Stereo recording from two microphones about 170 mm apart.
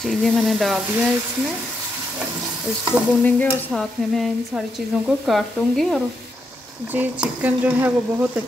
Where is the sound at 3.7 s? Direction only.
Centre (ahead or behind).